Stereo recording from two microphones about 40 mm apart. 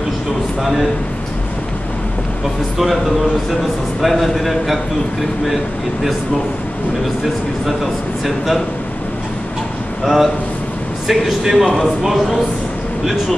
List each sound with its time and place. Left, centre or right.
2.8 s a man's voice: centre
10.0 s a man's voice: centre